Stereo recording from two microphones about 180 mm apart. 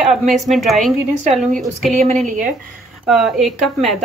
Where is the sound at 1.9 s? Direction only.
40° right (ahead or behind).